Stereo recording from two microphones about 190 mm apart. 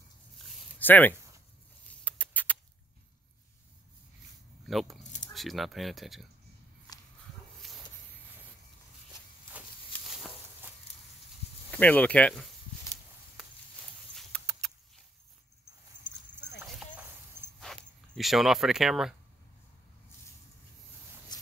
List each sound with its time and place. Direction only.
0.7 s speech: 10° left (ahead or behind)
2.0 s rodents: 10° left (ahead or behind)
4.6 s speech: centre (ahead or behind)
7.6 s a sound: centre (ahead or behind)
9.5 s a sound: 5° right (ahead or behind)
11.7 s speech: 10° left (ahead or behind)
14.1 s rodents: 5° left (ahead or behind)
16.6 s walk: 10° right (ahead or behind)
17.6 s speech: centre (ahead or behind)
21.3 s a sound: 20° left (ahead or behind)